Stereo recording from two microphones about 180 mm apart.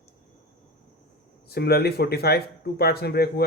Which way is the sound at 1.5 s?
60° left (ahead or behind).